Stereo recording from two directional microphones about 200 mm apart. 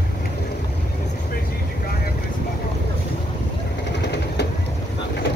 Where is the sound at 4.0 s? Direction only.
55° left (ahead or behind).